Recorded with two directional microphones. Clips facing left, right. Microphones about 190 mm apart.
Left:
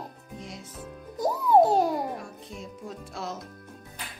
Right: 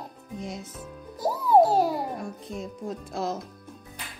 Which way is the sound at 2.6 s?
40° right (ahead or behind).